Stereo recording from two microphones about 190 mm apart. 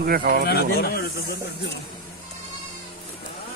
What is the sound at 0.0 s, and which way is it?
Speech, 50° right (ahead or behind).